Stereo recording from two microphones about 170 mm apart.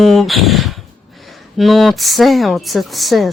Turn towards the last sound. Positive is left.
turn(degrees=0)  # may be behind; listen again after turning